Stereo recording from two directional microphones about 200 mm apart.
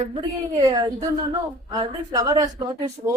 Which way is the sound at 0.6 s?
20° right (ahead or behind).